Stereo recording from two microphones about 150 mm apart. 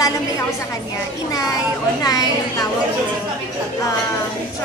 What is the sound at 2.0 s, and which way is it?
Speech, 25° left (ahead or behind).